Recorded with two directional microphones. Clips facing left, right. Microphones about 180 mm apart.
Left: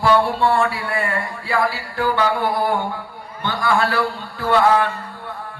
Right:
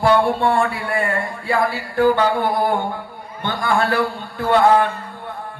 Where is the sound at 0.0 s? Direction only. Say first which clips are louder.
Right 1 dB; 50° right (ahead or behind).